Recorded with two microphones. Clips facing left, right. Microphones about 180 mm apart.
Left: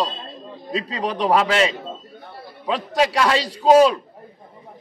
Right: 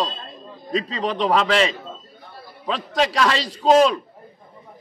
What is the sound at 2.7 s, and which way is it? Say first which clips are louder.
A man's voice: left 1 dB; 10° left (ahead or behind).